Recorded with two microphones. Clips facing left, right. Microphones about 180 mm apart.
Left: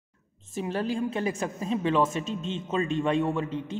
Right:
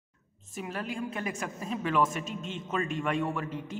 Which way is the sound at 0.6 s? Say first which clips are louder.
Left 7 dB; 30° left (ahead or behind).